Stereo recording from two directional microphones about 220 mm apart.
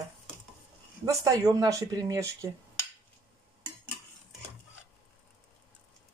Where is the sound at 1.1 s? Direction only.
15° right (ahead or behind).